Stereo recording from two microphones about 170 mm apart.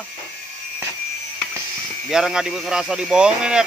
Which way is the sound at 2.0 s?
5° right (ahead or behind).